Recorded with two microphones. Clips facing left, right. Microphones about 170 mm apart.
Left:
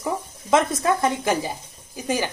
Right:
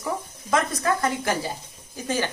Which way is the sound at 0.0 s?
25° left (ahead or behind).